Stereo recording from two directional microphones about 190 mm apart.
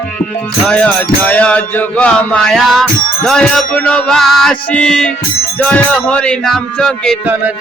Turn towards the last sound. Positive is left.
turn(degrees=5)  # may be behind; listen again after turning